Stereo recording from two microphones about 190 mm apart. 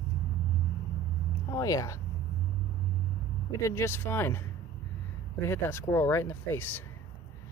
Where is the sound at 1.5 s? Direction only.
20° left (ahead or behind).